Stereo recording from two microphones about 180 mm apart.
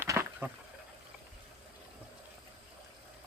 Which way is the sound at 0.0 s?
15° right (ahead or behind).